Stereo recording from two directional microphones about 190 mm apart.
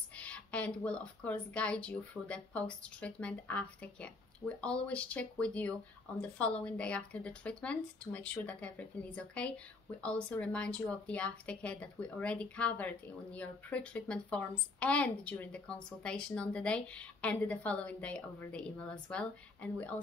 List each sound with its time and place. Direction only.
0.1 s speech: 5° left (ahead or behind)